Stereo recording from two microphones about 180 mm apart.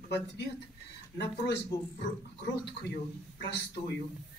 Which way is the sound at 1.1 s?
70° left (ahead or behind).